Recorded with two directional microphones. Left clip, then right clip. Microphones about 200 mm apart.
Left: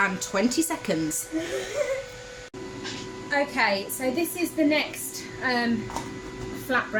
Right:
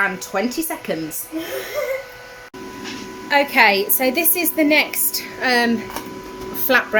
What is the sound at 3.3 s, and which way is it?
A woman's voice, 45° right (ahead or behind).